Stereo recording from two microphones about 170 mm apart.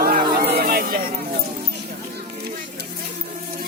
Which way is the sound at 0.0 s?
65° right (ahead or behind).